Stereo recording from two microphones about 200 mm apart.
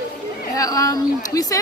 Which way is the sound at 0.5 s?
15° left (ahead or behind).